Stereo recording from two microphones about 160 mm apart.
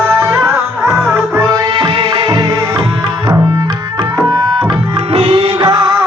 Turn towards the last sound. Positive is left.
turn(degrees=-25)  # may be behind; listen again after turning